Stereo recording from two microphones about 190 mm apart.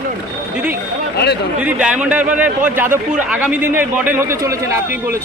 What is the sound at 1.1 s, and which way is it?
Speech, 60° left (ahead or behind).